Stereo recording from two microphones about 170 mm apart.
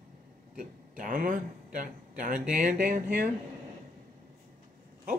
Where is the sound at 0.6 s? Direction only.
50° right (ahead or behind).